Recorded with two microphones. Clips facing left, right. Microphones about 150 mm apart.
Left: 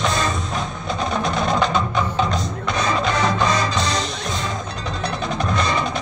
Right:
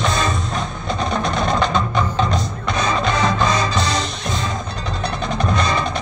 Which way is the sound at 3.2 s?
20° right (ahead or behind).